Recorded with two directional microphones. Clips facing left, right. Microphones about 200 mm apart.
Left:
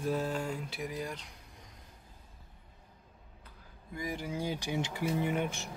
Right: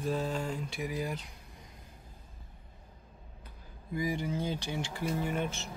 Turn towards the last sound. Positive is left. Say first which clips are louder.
# left 1 dB
turn(degrees=15)  # may be behind; listen again after turning